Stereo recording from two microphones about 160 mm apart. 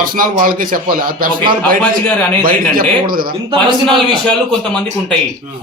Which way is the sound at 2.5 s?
65° right (ahead or behind).